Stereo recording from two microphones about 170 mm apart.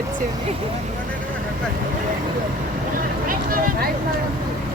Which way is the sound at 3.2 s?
55° right (ahead or behind).